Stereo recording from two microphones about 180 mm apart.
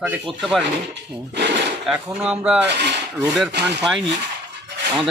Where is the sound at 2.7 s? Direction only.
70° right (ahead or behind).